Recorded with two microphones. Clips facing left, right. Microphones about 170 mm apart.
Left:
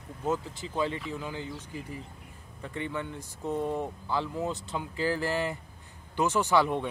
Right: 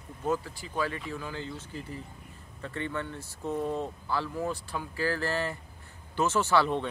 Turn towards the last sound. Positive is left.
turn(degrees=15)  # may be behind; listen again after turning